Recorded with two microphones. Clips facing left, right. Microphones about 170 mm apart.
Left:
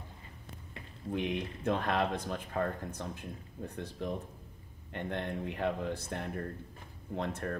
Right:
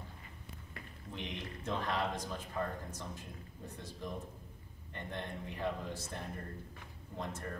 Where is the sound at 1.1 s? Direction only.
55° left (ahead or behind).